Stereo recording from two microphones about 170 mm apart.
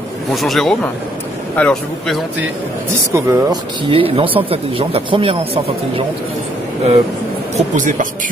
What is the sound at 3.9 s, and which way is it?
Speech, 30° right (ahead or behind).